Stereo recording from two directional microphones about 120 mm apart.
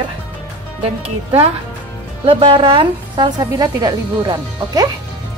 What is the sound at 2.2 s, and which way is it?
A woman's voice, 45° right (ahead or behind).